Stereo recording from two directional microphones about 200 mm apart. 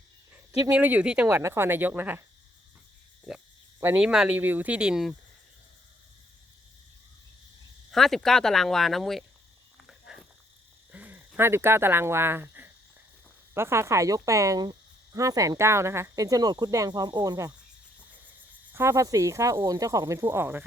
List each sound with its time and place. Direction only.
0.6 s speech: 10° right (ahead or behind)
3.3 s speech: 5° right (ahead or behind)
7.9 s speech: centre (ahead or behind)
9.8 s a sound: centre (ahead or behind)
10.9 s speech: 10° right (ahead or behind)
18.7 s speech: 10° right (ahead or behind)